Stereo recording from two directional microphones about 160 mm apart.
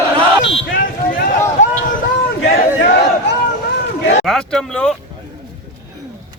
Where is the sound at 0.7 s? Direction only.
60° left (ahead or behind).